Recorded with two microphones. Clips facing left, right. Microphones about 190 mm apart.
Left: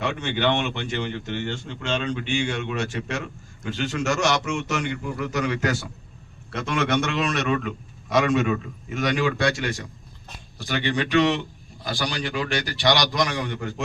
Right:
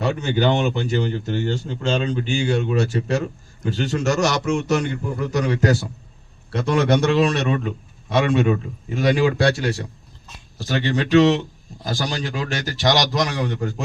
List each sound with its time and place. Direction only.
0.0 s speech: 40° right (ahead or behind)